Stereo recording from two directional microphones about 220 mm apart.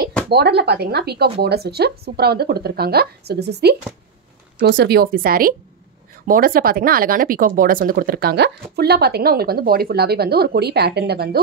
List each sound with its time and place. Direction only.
0.3 s speech: 50° right (ahead or behind)